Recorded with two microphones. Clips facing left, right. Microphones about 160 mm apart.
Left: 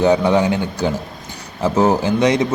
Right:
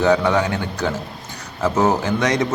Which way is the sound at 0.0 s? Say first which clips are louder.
Left 2 dB; 20° left (ahead or behind).